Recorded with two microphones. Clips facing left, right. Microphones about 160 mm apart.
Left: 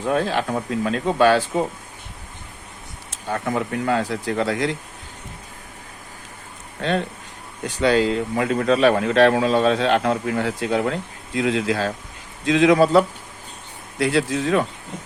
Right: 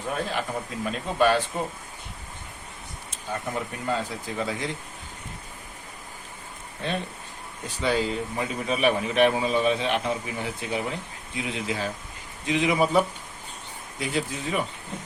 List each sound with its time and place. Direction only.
0.1 s a man's voice: 90° left
3.1 s speech: 90° left
7.8 s a man's voice: 85° left